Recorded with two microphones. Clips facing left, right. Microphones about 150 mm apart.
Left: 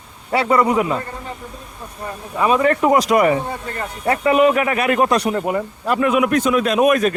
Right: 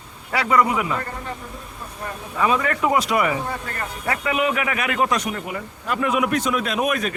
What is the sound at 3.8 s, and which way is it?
Speech, 30° left (ahead or behind).